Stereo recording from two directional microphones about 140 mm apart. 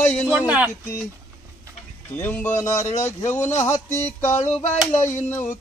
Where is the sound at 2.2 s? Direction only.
10° left (ahead or behind).